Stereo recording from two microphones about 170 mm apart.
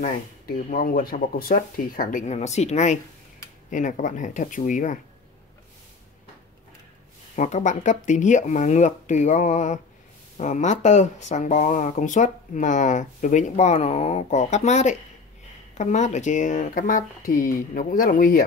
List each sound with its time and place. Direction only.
0.0 s speech: 55° left (ahead or behind)
7.3 s speech: 45° left (ahead or behind)